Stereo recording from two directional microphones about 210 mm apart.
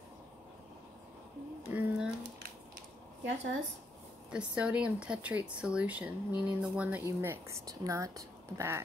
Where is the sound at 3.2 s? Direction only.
60° right (ahead or behind).